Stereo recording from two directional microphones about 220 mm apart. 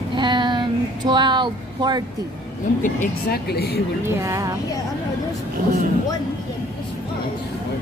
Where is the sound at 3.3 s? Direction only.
45° left (ahead or behind).